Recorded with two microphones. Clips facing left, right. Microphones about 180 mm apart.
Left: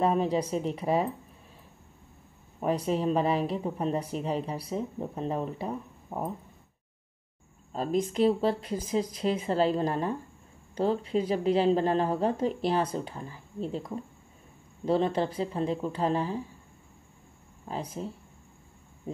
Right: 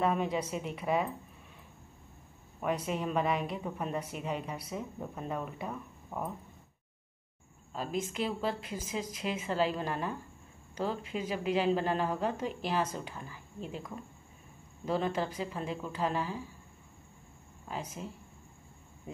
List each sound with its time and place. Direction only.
0.0 s speech: 35° left (ahead or behind)
2.6 s speech: 35° left (ahead or behind)
7.7 s speech: 35° left (ahead or behind)
17.6 s speech: 35° left (ahead or behind)